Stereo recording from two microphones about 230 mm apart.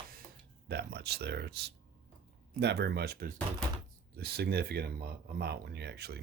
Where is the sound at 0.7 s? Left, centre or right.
Right.